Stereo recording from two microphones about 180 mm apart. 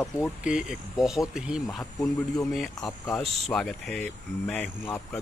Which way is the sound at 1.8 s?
20° left (ahead or behind).